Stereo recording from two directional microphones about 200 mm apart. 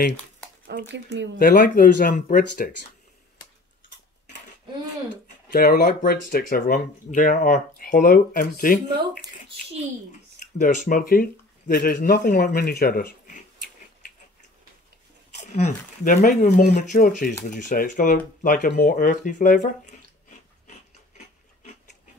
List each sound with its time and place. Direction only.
0.7 s speech: 55° right (ahead or behind)
1.4 s speech: 45° left (ahead or behind)
5.5 s speech: 45° left (ahead or behind)
10.6 s speech: 40° left (ahead or behind)
15.3 s speech: 35° left (ahead or behind)